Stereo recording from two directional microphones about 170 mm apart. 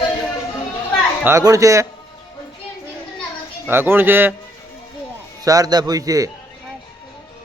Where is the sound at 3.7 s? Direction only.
15° right (ahead or behind).